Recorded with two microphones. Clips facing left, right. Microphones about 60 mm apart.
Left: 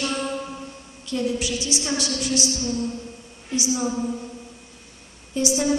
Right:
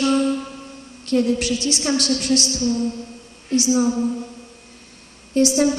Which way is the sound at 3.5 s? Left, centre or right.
Right.